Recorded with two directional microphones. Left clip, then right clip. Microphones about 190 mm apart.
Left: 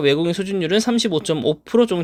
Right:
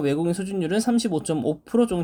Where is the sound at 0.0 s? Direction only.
20° left (ahead or behind).